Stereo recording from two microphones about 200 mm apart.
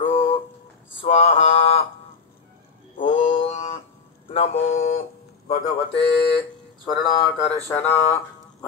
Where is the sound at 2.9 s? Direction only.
40° left (ahead or behind).